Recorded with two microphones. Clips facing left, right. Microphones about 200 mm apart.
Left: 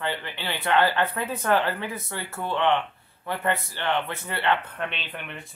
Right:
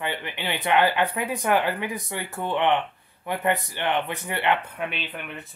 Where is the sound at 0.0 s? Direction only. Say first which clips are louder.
Right 1 dB; 15° right (ahead or behind).